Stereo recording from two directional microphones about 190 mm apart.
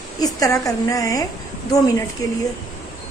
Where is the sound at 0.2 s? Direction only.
20° left (ahead or behind).